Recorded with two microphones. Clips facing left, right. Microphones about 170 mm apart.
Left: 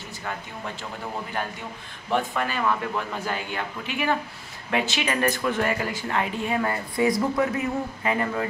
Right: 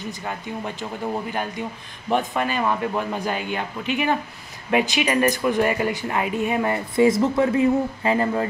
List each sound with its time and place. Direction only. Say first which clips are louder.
2.0 s speech: right 3 dB; 20° right (ahead or behind)